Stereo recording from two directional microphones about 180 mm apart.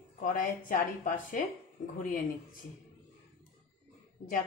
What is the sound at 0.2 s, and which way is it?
A woman's voice, 50° left (ahead or behind).